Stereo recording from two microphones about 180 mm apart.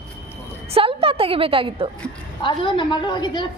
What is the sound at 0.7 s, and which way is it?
A woman's voice, 30° right (ahead or behind).